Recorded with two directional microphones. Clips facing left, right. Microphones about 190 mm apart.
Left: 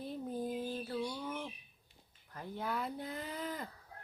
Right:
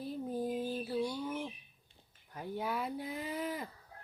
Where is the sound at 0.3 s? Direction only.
10° right (ahead or behind).